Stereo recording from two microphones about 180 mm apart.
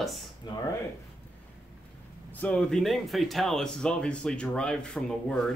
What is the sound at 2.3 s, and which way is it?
Speech, 5° left (ahead or behind).